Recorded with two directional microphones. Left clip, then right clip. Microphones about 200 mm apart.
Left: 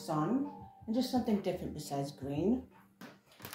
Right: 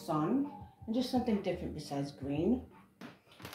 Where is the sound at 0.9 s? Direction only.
15° left (ahead or behind).